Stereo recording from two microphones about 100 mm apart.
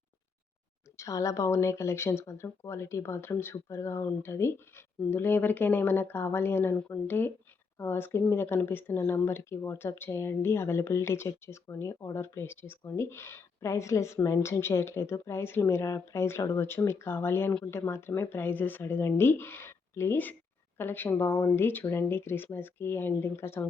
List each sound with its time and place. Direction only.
0.9 s speech: 35° left (ahead or behind)